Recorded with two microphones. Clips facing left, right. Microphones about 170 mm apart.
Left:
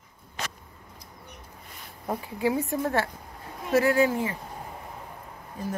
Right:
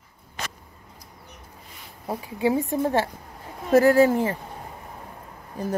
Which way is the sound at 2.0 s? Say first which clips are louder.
Right 3 dB; 20° right (ahead or behind).